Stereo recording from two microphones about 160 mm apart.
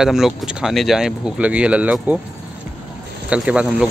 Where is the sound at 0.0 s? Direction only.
5° right (ahead or behind).